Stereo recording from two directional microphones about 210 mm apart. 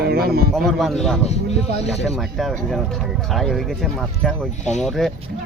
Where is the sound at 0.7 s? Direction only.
Centre (ahead or behind).